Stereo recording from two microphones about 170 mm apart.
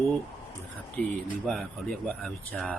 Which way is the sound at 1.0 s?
5° left (ahead or behind).